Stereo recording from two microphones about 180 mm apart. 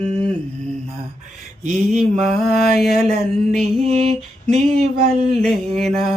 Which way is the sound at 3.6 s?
35° right (ahead or behind).